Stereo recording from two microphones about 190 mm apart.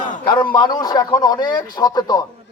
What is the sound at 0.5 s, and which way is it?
Speech, 20° left (ahead or behind).